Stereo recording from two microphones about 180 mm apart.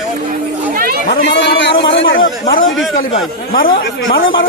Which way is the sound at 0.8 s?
55° right (ahead or behind).